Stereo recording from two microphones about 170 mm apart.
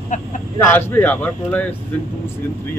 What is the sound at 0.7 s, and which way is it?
Speech, 10° left (ahead or behind).